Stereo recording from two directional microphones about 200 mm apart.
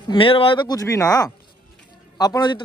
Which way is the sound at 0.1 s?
25° left (ahead or behind).